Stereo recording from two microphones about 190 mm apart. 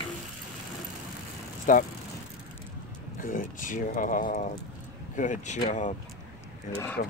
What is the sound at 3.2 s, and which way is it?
Speech, 45° left (ahead or behind).